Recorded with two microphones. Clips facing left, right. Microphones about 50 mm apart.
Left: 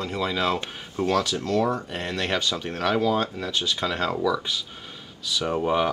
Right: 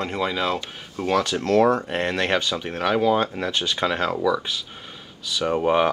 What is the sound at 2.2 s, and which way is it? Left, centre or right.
Speech, right.